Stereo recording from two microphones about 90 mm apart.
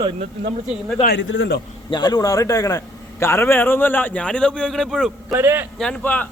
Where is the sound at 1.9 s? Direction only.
45° left (ahead or behind); by 5.3 s 5° left (ahead or behind).